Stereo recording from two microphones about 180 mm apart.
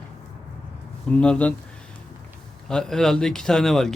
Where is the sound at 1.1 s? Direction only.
5° left (ahead or behind).